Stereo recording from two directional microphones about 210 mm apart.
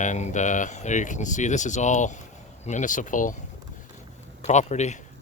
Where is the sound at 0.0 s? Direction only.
35° left (ahead or behind).